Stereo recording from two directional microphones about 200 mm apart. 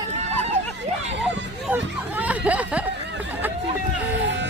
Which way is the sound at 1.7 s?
5° right (ahead or behind).